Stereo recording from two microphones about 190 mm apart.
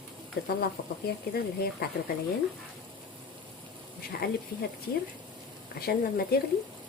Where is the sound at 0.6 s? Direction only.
55° left (ahead or behind).